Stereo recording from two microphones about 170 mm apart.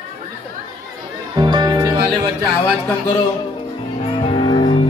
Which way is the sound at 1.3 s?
25° right (ahead or behind).